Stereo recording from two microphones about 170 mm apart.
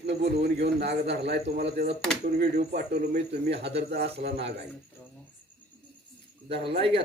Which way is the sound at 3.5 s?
90° right.